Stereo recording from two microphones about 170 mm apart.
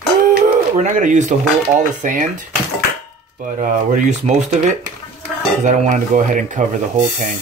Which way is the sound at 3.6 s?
50° right (ahead or behind).